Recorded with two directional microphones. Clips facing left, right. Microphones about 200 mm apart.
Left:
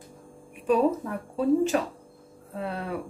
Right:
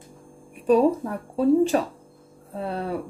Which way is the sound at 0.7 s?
35° right (ahead or behind).